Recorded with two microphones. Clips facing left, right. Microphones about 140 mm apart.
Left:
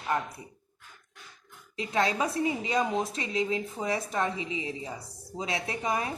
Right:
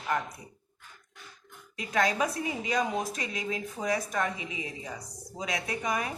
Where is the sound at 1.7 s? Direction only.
25° left (ahead or behind).